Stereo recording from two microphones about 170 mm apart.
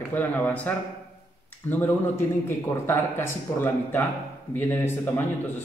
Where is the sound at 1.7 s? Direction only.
10° left (ahead or behind).